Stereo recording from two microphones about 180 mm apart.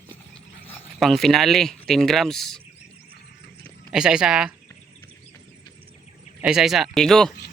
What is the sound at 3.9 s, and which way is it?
Speech, 5° right (ahead or behind).